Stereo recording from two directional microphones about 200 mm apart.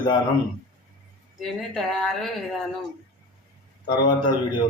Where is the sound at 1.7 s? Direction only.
Centre (ahead or behind).